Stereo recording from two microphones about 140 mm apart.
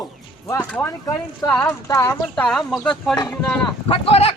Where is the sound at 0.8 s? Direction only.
25° left (ahead or behind).